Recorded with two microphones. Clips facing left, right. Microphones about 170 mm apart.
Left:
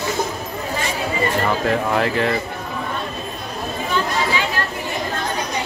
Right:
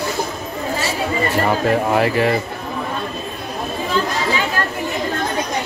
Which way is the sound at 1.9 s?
10° right (ahead or behind).